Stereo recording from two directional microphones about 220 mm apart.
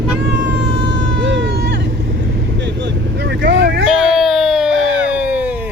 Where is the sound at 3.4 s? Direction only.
50° right (ahead or behind).